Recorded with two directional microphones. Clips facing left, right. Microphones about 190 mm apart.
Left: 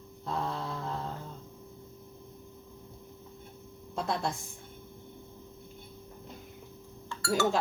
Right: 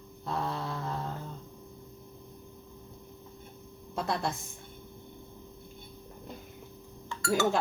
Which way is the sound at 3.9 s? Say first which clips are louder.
Even; centre (ahead or behind).